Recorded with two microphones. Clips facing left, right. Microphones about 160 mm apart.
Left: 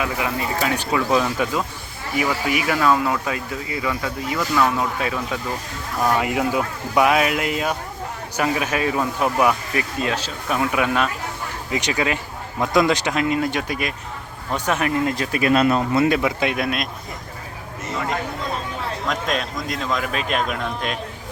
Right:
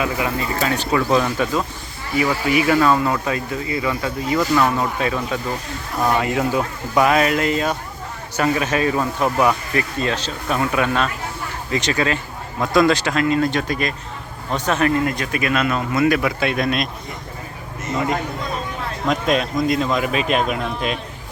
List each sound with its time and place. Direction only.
0.2 s speech: 10° left (ahead or behind); by 4.7 s 10° right (ahead or behind)
4.8 s speech: 5° left (ahead or behind)
15.0 s speech: 30° left (ahead or behind)
16.6 s speech: 5° left (ahead or behind)
19.0 s speech: 5° right (ahead or behind)